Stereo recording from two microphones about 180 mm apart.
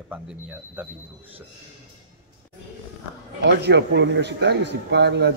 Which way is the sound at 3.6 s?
70° right (ahead or behind).